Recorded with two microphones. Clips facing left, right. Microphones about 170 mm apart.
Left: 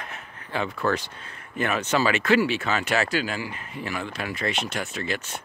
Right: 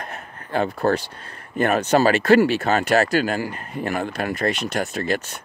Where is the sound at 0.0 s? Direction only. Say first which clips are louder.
Right 5 dB; 45° right (ahead or behind).